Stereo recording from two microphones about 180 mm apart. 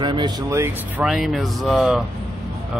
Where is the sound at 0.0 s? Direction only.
25° right (ahead or behind).